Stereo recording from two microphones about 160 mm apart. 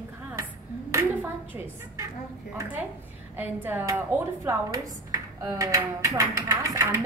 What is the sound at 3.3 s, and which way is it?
Speech, 10° right (ahead or behind).